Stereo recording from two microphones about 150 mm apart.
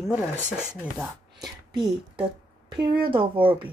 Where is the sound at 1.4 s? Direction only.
30° right (ahead or behind).